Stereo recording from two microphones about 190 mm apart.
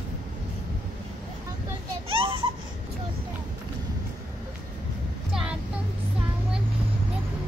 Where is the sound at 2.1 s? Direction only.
30° right (ahead or behind).